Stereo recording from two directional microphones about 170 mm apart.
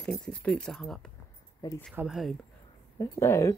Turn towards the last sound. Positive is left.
turn(degrees=15)  # may be behind; listen again after turning